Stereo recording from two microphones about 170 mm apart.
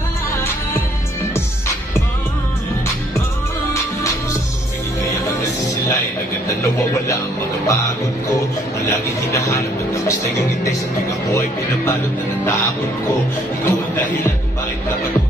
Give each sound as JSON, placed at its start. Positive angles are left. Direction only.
{"t": 3.7, "sound": "music", "side_deg": 15}
{"t": 6.6, "sound": "music", "side_deg": 15}
{"t": 8.8, "sound": "speech", "side_deg": 15}
{"t": 11.3, "sound": "speech", "side_deg": 15}
{"t": 13.7, "sound": "speech", "side_deg": 10}